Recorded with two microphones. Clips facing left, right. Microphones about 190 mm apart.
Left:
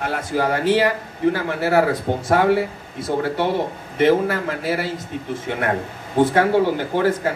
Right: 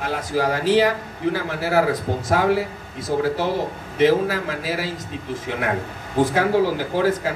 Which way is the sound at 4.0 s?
55° left (ahead or behind).